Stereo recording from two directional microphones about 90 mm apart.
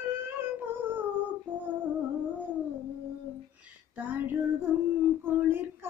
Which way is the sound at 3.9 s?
20° right (ahead or behind).